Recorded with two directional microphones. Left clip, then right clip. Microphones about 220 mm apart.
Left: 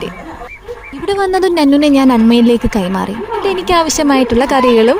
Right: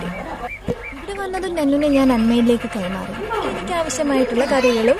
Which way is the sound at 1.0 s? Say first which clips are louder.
Left 13 dB; 40° left (ahead or behind).